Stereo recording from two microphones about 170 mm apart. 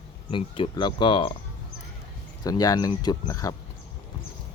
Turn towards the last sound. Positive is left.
turn(degrees=20)  # may be behind; listen again after turning